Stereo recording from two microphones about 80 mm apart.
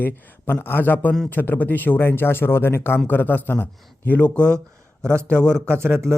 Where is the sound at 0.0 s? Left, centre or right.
Left.